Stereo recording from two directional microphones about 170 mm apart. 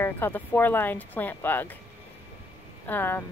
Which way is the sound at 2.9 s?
10° left (ahead or behind).